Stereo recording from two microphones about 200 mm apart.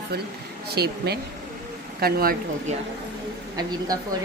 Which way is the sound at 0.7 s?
55° right (ahead or behind).